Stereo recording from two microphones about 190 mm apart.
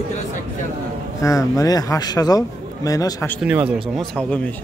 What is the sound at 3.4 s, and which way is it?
Speech, 5° right (ahead or behind).